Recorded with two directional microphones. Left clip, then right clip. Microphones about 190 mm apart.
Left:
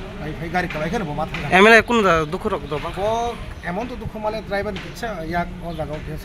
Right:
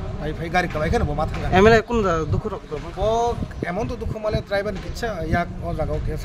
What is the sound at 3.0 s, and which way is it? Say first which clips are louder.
Speech: right 3 dB; 25° right (ahead or behind).